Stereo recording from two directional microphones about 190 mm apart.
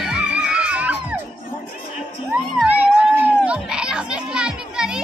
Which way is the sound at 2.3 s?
10° right (ahead or behind).